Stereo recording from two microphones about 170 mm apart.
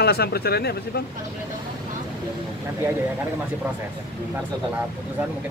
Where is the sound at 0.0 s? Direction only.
65° left (ahead or behind).